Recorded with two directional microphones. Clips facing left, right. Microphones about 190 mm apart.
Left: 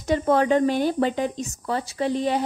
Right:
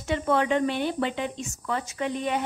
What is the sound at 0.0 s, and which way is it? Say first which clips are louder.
Speech: left 4 dB; 40° left (ahead or behind).